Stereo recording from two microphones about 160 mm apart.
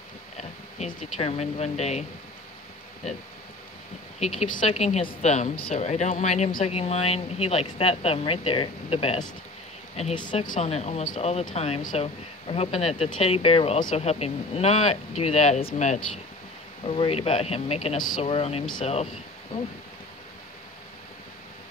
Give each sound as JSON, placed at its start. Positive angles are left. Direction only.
{"t": 0.4, "sound": "speech", "side_deg": 45}
{"t": 4.6, "sound": "a woman's voice", "side_deg": 40}
{"t": 10.4, "sound": "a woman's voice", "side_deg": 50}
{"t": 12.4, "sound": "a woman's voice", "side_deg": 40}
{"t": 13.7, "sound": "a woman's voice", "side_deg": 45}